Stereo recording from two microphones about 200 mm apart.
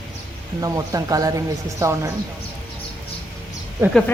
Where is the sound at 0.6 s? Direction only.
15° right (ahead or behind).